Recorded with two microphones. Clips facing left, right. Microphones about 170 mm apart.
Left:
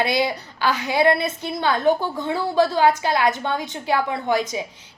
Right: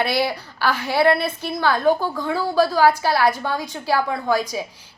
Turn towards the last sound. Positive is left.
turn(degrees=20)  # may be behind; listen again after turning